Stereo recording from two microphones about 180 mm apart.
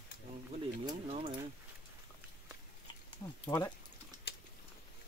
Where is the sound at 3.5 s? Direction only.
25° left (ahead or behind).